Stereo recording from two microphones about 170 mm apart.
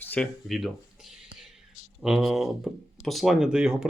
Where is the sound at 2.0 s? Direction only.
Centre (ahead or behind).